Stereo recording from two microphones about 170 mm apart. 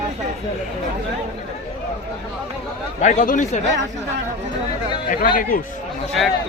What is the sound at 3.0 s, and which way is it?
Speech, 50° left (ahead or behind).